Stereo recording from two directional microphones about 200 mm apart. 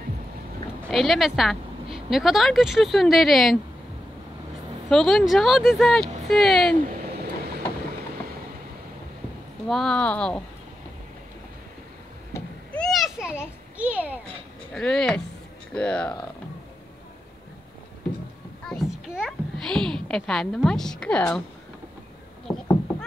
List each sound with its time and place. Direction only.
0.8 s speech: centre (ahead or behind)
4.8 s speech: centre (ahead or behind)
9.7 s speech: centre (ahead or behind)
12.4 s a sound: 5° left (ahead or behind)
14.7 s speech: 5° left (ahead or behind)
18.7 s a child's voice: centre (ahead or behind)
22.5 s rowboat: 20° left (ahead or behind)